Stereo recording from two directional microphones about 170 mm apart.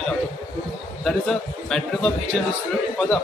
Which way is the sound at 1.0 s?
5° left (ahead or behind).